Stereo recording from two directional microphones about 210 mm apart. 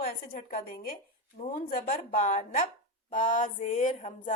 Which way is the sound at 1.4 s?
40° left (ahead or behind).